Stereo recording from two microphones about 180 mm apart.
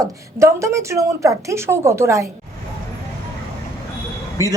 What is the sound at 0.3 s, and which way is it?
A woman's voice, 15° right (ahead or behind).